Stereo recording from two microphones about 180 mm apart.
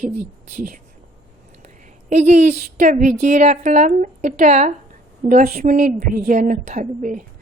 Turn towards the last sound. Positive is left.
turn(degrees=-45)  # may be behind; listen again after turning